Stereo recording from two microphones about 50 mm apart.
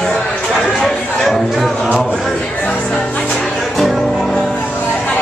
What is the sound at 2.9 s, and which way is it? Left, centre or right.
Music, centre.